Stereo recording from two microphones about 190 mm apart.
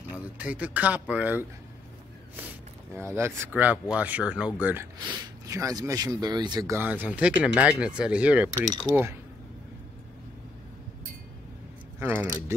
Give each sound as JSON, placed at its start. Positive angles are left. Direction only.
{"t": 0.1, "sound": "speech", "side_deg": -10}
{"t": 2.3, "sound": "a sound", "side_deg": -10}
{"t": 3.2, "sound": "speech", "side_deg": -15}
{"t": 6.7, "sound": "speech", "side_deg": -10}
{"t": 12.0, "sound": "speech", "side_deg": -10}